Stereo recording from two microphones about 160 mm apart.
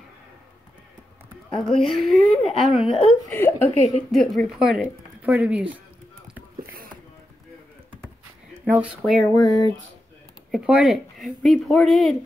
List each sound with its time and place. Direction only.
1.5 s speech: 5° left (ahead or behind)
3.3 s speech: 10° left (ahead or behind); by 5.8 s 10° right (ahead or behind)
8.6 s speech: 10° right (ahead or behind)
9.4 s a sound: 20° left (ahead or behind)
10.5 s speech: centre (ahead or behind)